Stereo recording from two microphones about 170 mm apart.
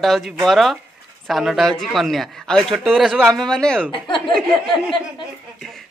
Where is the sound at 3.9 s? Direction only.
30° left (ahead or behind).